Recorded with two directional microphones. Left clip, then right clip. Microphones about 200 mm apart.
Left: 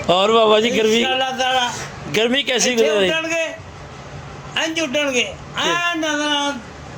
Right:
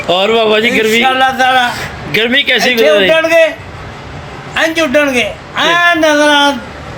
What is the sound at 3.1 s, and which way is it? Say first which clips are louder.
Speech: right 13 dB; 10° left (ahead or behind).